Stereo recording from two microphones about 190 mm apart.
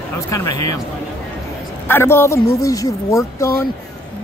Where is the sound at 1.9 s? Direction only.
10° left (ahead or behind).